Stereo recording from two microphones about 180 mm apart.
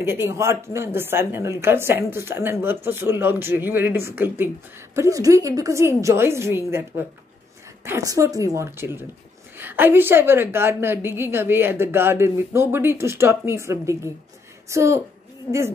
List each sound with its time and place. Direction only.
0.0 s a woman's voice: 15° right (ahead or behind)